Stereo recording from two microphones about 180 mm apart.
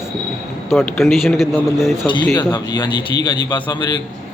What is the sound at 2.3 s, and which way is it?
A man's voice, 20° left (ahead or behind).